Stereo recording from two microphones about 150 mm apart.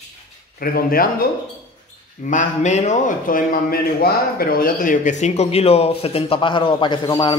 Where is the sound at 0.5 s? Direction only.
80° left.